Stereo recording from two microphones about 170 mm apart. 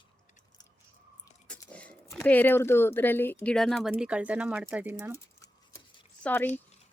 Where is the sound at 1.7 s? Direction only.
5° left (ahead or behind); by 5.1 s 10° right (ahead or behind).